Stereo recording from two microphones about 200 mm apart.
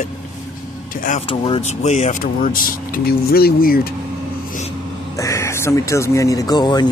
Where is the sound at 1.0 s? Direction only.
35° left (ahead or behind); by 3.8 s 50° left (ahead or behind).